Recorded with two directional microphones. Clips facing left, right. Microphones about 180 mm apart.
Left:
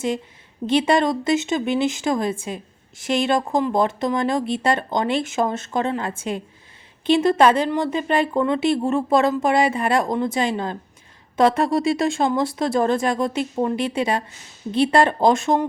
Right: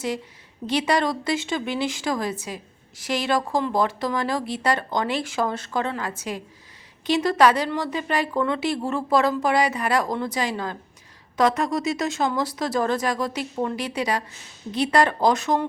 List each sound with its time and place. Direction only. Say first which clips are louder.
0.7 s a woman's voice: left 4 dB; 25° left (ahead or behind)